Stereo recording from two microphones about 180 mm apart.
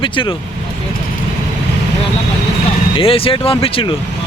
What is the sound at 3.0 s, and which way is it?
Speech, 30° left (ahead or behind).